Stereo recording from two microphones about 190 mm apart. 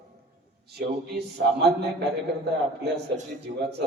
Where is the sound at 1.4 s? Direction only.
80° right.